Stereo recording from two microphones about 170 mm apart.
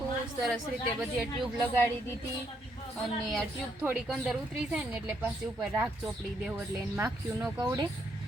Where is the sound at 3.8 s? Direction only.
5° right (ahead or behind).